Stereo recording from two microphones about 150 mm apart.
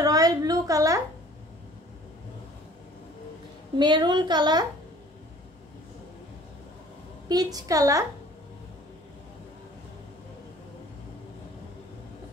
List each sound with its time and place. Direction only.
0.0 s a sound: 25° right (ahead or behind)
3.7 s a woman's voice: 30° right (ahead or behind)
7.2 s a woman's voice: 25° right (ahead or behind)